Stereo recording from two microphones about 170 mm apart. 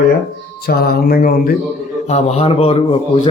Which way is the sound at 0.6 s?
65° left (ahead or behind).